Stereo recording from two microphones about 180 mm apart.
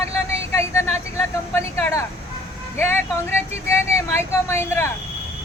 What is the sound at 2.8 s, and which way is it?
Speech, 15° left (ahead or behind).